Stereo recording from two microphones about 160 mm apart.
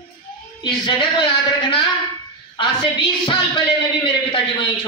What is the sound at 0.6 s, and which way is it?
Speech, 30° left (ahead or behind).